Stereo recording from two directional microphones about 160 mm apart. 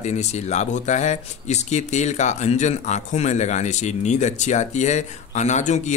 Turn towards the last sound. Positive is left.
turn(degrees=45)  # may be behind; listen again after turning